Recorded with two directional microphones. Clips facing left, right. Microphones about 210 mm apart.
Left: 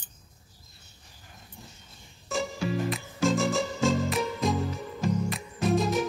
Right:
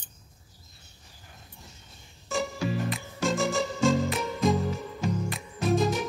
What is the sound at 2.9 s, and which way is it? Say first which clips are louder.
Music: left 2 dB; centre (ahead or behind).